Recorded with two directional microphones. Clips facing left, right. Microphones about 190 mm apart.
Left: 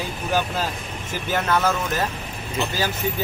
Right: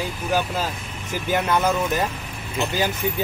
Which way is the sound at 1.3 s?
15° right (ahead or behind).